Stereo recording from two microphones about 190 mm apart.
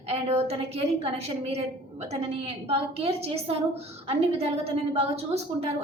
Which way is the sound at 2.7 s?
30° right (ahead or behind).